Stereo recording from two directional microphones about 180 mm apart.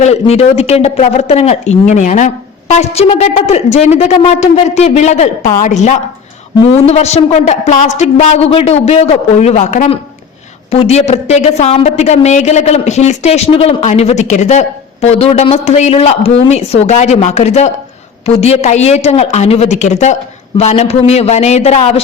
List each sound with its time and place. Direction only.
0.0 s a woman's voice: 35° left (ahead or behind)